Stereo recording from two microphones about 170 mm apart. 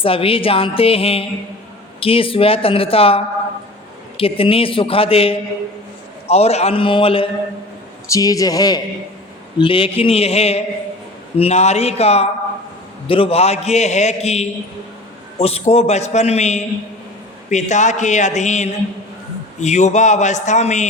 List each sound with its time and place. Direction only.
0.0 s a man's voice: 35° left (ahead or behind)
8.0 s a man's voice: 20° left (ahead or behind); by 20.8 s 45° left (ahead or behind)